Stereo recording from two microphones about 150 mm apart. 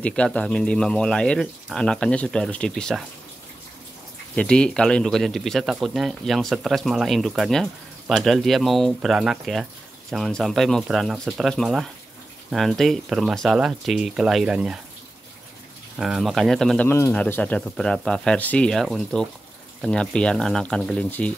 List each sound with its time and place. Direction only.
0.0 s speech: 5° left (ahead or behind)
4.4 s speech: 5° left (ahead or behind)
16.0 s speech: centre (ahead or behind)
16.8 s speech: 15° left (ahead or behind)